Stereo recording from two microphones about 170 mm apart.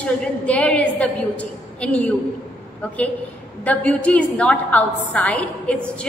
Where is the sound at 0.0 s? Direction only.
5° left (ahead or behind).